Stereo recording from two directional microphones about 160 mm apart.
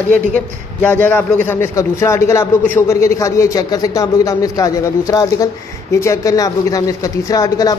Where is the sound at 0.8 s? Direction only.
10° left (ahead or behind).